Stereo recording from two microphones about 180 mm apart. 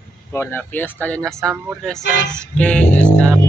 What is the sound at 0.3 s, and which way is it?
Speech, 15° left (ahead or behind).